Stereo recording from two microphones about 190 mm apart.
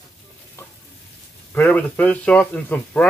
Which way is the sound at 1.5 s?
10° left (ahead or behind).